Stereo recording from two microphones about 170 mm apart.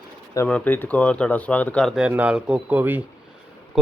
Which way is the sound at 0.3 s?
10° left (ahead or behind).